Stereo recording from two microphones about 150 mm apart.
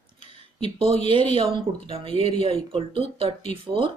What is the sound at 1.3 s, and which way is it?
Speech, 35° right (ahead or behind).